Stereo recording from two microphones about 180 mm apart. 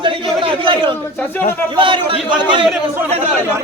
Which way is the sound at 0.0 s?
25° right (ahead or behind).